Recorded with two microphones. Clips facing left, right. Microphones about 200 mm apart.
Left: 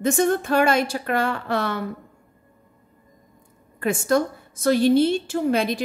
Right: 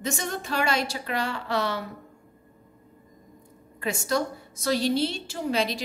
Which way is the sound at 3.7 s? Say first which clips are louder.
Left 6 dB; 50° left (ahead or behind).